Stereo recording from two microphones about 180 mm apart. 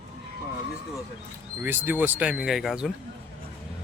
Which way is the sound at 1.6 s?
10° right (ahead or behind).